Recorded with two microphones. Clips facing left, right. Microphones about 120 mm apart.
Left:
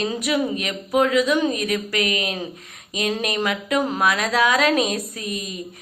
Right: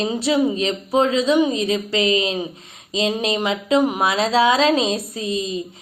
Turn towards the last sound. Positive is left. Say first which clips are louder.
# right 6 dB
turn(degrees=-25)  # may be behind; listen again after turning